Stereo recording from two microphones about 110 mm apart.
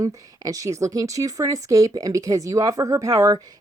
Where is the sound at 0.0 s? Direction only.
30° right (ahead or behind).